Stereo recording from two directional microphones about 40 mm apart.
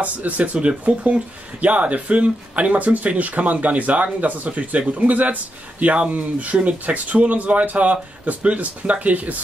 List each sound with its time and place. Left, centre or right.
0.0 s speech: right